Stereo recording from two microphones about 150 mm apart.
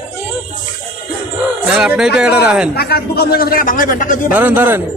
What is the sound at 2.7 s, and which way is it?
A man's voice, 90° left.